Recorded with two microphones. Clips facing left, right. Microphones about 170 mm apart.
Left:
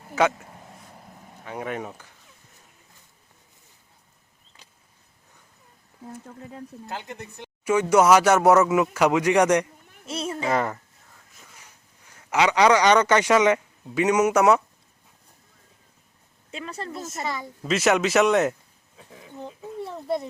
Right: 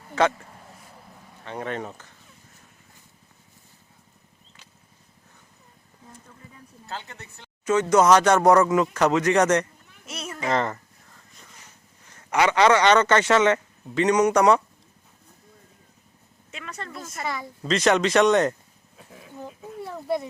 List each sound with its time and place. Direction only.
0.1 s speech: 5° left (ahead or behind)
1.5 s speech: 10° left (ahead or behind)
6.2 s speech: 70° left (ahead or behind)
6.8 s speech: 15° left (ahead or behind)
10.1 s a sound: 30° left (ahead or behind)
10.4 s speech: 10° left (ahead or behind)
16.5 s a woman's voice: 30° left (ahead or behind)
17.2 s a child's voice: centre (ahead or behind)